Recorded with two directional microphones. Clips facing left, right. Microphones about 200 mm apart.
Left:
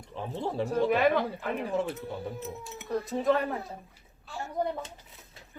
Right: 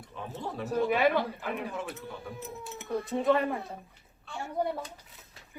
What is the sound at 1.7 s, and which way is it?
Speech, 30° left (ahead or behind).